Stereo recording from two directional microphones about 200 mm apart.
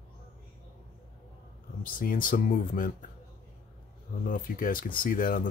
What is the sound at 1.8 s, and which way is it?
Speech, 45° left (ahead or behind).